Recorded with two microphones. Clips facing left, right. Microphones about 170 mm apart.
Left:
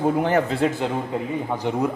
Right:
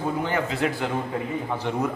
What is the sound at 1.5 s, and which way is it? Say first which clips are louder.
Speech: left 3 dB; 10° left (ahead or behind).